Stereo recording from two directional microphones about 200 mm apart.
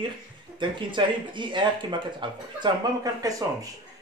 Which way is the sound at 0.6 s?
25° right (ahead or behind).